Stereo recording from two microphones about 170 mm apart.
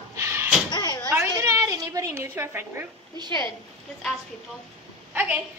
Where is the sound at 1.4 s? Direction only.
20° right (ahead or behind).